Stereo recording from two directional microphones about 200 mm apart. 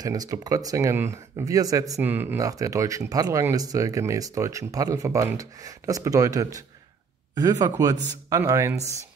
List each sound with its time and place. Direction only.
0.0 s speech: 20° right (ahead or behind)